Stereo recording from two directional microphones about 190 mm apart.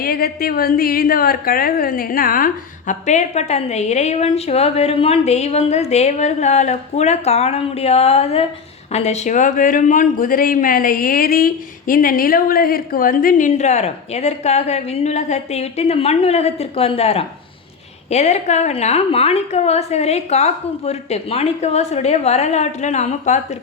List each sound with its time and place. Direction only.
0.0 s a woman's voice: 50° left (ahead or behind)